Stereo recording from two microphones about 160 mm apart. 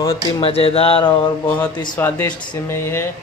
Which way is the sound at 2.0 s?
15° left (ahead or behind).